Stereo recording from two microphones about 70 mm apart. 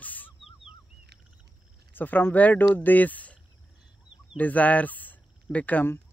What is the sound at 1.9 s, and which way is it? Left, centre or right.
Speech, left.